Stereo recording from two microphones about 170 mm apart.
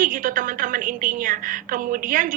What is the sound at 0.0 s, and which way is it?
A woman's voice, 55° right (ahead or behind).